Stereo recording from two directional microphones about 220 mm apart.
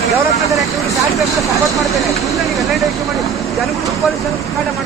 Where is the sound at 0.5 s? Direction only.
Centre (ahead or behind).